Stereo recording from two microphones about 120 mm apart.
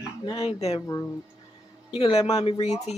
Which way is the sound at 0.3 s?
45° left (ahead or behind).